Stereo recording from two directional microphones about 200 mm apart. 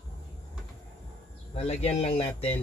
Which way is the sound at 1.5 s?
35° left (ahead or behind).